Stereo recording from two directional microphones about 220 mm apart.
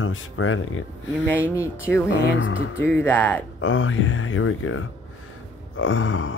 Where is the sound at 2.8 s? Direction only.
10° left (ahead or behind).